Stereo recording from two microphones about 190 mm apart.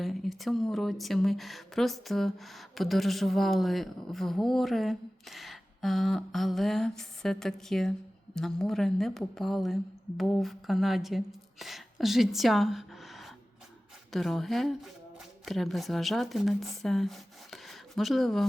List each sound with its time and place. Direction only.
0.0 s speech: centre (ahead or behind)